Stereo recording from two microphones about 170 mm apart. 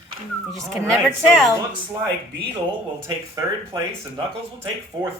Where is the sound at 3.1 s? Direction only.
20° right (ahead or behind).